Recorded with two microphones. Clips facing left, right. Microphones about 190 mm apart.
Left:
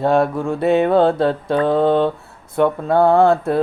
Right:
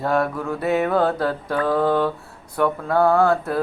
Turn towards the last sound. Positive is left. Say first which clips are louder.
# left 4 dB
turn(degrees=25)  # may be behind; listen again after turning